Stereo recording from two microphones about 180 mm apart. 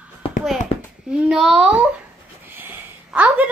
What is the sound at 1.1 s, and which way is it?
A child's voice, centre (ahead or behind).